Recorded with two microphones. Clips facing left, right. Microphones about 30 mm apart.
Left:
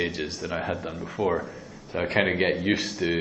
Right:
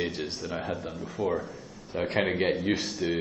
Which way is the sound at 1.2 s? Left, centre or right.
Left.